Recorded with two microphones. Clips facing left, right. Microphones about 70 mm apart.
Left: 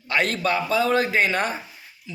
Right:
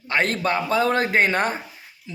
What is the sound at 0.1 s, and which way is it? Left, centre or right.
A man's voice, right.